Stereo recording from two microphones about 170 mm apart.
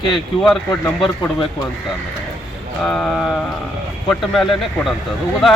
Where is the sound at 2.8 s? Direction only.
5° left (ahead or behind).